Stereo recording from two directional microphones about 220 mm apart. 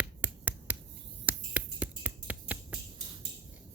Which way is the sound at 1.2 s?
5° right (ahead or behind).